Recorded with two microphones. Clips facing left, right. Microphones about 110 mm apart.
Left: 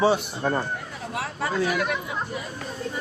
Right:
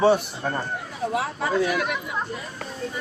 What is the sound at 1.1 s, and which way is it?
Speech, 20° right (ahead or behind).